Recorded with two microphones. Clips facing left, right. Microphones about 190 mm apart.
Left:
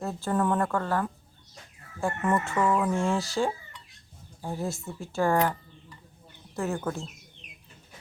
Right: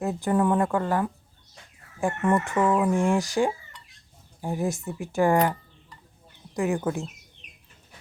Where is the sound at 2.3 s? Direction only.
15° right (ahead or behind).